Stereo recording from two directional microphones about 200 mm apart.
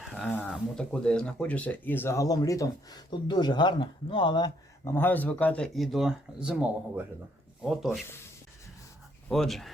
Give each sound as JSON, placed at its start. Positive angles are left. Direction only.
{"t": 0.3, "sound": "speech", "side_deg": -5}
{"t": 4.9, "sound": "speech", "side_deg": 10}
{"t": 9.3, "sound": "speech", "side_deg": 0}